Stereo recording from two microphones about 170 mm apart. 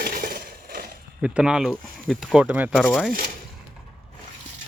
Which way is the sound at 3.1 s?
60° right (ahead or behind).